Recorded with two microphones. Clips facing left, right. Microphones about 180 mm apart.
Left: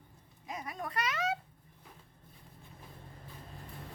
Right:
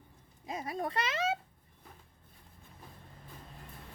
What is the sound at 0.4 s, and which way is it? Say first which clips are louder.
Speech: right 4 dB; 30° right (ahead or behind).